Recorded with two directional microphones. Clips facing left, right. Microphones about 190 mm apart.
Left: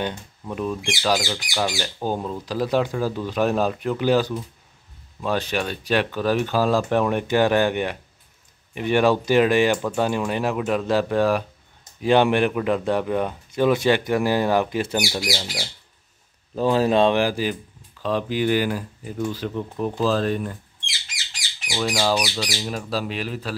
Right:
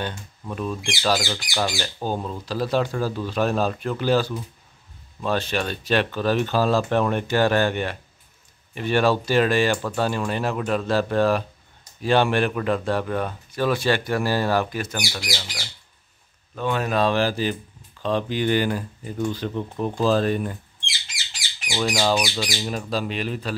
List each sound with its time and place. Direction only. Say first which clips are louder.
0.0 s speech: left 3 dB; 15° left (ahead or behind); by 20.5 s 5° right (ahead or behind)
21.6 s speech: even; 5° left (ahead or behind)